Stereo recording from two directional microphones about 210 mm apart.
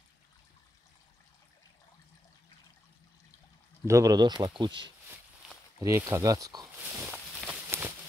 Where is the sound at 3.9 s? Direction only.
15° right (ahead or behind).